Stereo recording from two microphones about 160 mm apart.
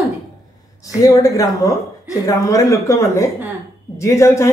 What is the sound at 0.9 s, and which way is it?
Speech, 20° left (ahead or behind).